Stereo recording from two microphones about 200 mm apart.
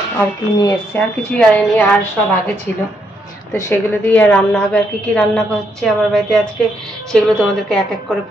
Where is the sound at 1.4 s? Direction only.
5° left (ahead or behind).